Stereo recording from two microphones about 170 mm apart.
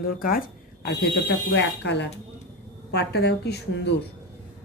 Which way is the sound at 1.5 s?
90° left.